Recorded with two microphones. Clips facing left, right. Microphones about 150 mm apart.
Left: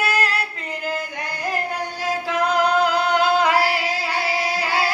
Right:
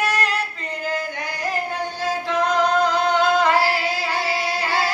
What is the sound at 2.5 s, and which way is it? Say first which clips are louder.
Music: left 1 dB; 10° left (ahead or behind).